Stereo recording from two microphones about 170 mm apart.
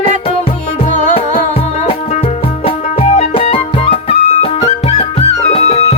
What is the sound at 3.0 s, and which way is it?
Music, 40° left (ahead or behind).